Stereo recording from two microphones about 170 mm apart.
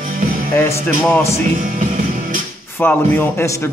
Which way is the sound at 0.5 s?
15° left (ahead or behind).